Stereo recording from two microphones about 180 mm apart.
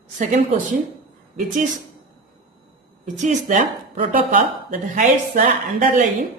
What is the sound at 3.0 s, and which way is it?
Speech, 45° right (ahead or behind).